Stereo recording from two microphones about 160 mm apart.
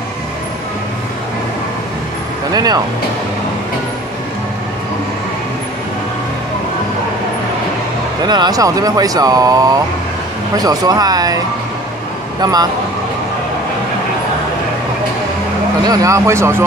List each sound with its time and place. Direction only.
2.5 s speech: 25° right (ahead or behind)
8.2 s speech: 25° right (ahead or behind)
15.8 s speech: 20° right (ahead or behind)